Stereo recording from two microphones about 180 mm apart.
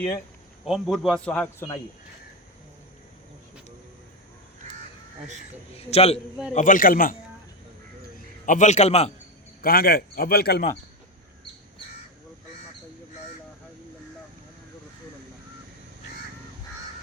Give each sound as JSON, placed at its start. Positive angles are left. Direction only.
{"t": 0.6, "sound": "speech", "side_deg": 0}
{"t": 5.7, "sound": "a man's voice", "side_deg": 35}
{"t": 6.5, "sound": "a man's voice", "side_deg": 45}
{"t": 8.4, "sound": "a man's voice", "side_deg": 45}
{"t": 9.6, "sound": "a man's voice", "side_deg": 55}